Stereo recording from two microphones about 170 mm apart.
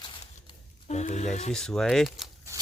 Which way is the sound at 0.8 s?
40° left (ahead or behind).